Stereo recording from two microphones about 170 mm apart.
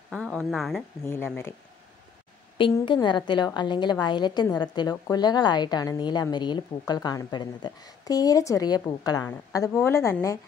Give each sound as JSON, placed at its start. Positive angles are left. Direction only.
{"t": 0.1, "sound": "a woman's voice", "side_deg": 5}
{"t": 1.0, "sound": "speech", "side_deg": 15}
{"t": 2.5, "sound": "a woman's voice", "side_deg": 30}